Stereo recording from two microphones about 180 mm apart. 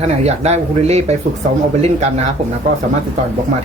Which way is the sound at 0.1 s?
35° right (ahead or behind).